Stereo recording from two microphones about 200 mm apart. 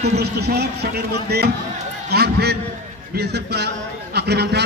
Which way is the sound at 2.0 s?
55° right (ahead or behind).